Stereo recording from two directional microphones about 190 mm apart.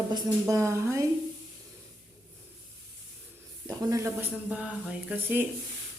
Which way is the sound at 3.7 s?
15° right (ahead or behind).